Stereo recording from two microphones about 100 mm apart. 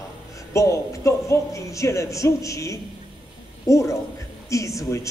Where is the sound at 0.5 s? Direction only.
30° left (ahead or behind).